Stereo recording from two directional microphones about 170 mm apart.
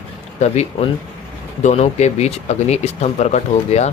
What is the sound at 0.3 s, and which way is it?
Speech, 40° left (ahead or behind).